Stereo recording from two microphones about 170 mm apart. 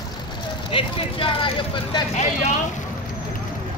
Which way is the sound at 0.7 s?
30° left (ahead or behind).